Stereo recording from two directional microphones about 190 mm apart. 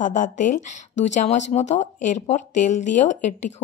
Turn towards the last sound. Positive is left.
turn(degrees=40)  # may be behind; listen again after turning